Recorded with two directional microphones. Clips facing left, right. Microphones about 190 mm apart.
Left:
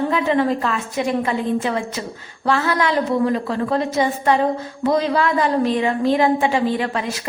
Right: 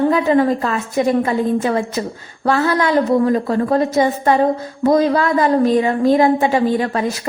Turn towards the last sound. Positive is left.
turn(degrees=-40)  # may be behind; listen again after turning